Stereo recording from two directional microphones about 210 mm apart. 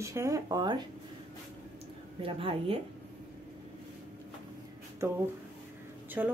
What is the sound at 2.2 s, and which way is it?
Speech, 25° right (ahead or behind).